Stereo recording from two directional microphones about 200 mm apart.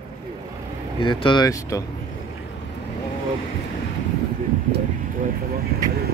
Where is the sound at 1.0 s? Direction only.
25° left (ahead or behind).